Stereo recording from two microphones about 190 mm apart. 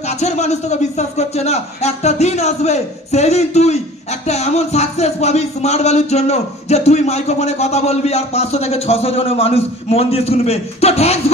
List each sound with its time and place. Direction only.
0.2 s music: 35° left (ahead or behind)